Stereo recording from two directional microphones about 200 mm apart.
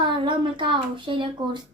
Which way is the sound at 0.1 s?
25° right (ahead or behind).